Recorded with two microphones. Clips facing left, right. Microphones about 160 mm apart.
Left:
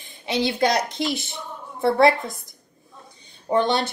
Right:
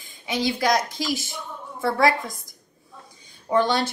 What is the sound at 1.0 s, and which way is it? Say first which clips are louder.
Speech: left 2 dB; 25° left (ahead or behind).